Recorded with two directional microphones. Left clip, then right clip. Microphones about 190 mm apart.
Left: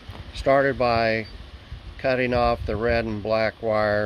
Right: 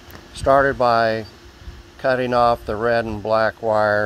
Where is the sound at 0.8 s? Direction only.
Centre (ahead or behind).